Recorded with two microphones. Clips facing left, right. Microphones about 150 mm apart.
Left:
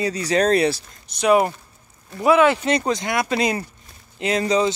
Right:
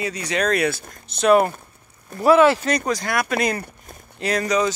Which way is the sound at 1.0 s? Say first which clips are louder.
Right 1 dB; 15° left (ahead or behind).